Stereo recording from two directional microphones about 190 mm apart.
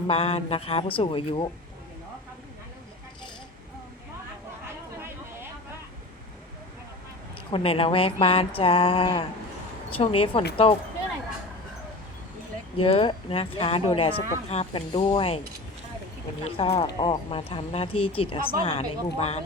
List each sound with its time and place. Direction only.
0.1 s speech: 30° left (ahead or behind)
4.9 s vehicle: 10° right (ahead or behind)
7.5 s speech: 30° left (ahead or behind)
12.7 s speech: 30° left (ahead or behind)
16.4 s speech: 35° left (ahead or behind)